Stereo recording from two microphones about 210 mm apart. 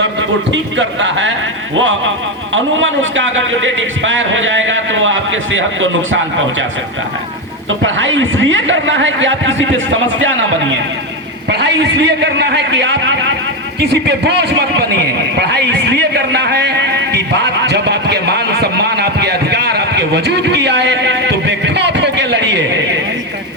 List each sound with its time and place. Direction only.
0.0 s a man's voice: 60° right (ahead or behind)
2.5 s a man's voice: 65° right (ahead or behind)
7.9 s a man's voice: 65° right (ahead or behind)
11.4 s a man's voice: 55° right (ahead or behind)
17.7 s a sound: 50° right (ahead or behind)